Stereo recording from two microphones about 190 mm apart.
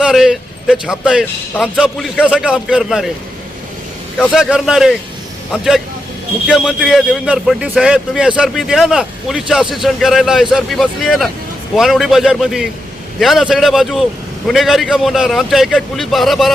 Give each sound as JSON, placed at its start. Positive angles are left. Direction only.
{"t": 0.0, "sound": "a man's voice", "side_deg": 0}
{"t": 4.2, "sound": "a man's voice", "side_deg": 0}